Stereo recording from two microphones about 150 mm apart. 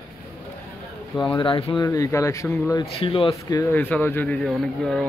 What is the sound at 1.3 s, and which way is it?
Speech, 35° left (ahead or behind).